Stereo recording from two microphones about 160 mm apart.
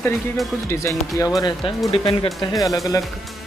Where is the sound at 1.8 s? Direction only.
40° left (ahead or behind).